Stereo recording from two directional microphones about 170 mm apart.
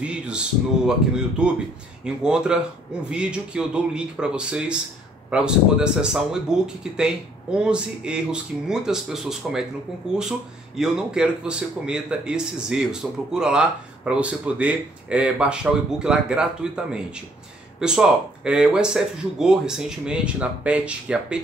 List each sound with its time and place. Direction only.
0.0 s a man's voice: 5° right (ahead or behind)